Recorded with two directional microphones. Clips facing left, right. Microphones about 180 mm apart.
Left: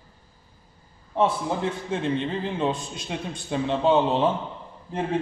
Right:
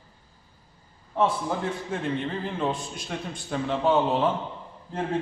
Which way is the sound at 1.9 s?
20° left (ahead or behind).